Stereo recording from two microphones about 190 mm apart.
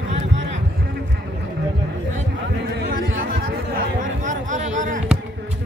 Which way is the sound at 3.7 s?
40° right (ahead or behind).